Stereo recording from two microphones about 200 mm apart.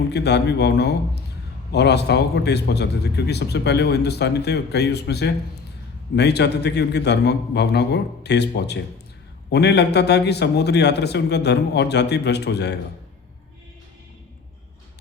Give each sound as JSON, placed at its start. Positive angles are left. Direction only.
{"t": 0.1, "sound": "speech", "side_deg": 55}